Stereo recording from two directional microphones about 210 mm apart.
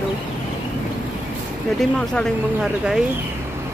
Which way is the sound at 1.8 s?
5° left (ahead or behind).